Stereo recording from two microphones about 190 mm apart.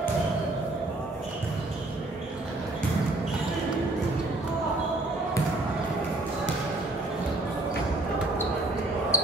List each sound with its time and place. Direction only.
9.1 s basketball bounce: 15° left (ahead or behind)